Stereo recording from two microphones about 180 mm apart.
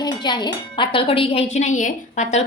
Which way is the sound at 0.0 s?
25° left (ahead or behind).